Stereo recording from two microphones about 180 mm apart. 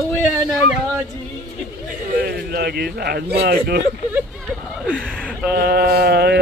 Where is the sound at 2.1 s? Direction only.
60° right (ahead or behind).